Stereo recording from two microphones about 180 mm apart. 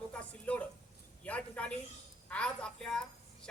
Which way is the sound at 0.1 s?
5° left (ahead or behind).